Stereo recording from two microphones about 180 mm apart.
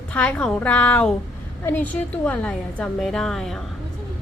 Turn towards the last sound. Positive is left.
turn(degrees=0)  # may be behind; listen again after turning